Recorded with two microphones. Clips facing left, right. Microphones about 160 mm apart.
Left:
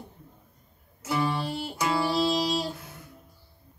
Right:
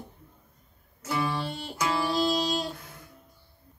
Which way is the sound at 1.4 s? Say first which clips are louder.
Left 2 dB; 10° left (ahead or behind).